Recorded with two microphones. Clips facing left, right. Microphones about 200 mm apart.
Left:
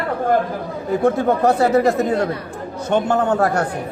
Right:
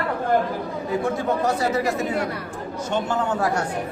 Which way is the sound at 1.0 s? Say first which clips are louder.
Left 8 dB; 60° left (ahead or behind).